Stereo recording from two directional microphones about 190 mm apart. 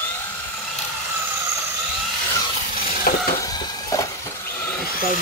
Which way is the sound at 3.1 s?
50° left (ahead or behind).